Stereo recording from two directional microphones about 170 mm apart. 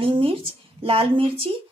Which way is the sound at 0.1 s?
30° right (ahead or behind).